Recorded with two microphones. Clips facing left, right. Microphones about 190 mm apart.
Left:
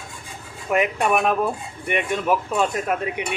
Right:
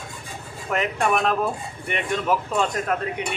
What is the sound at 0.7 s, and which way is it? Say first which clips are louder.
A man's voice: left 3 dB; 10° left (ahead or behind).